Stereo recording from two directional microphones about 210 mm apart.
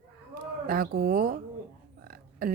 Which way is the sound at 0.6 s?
45° right (ahead or behind).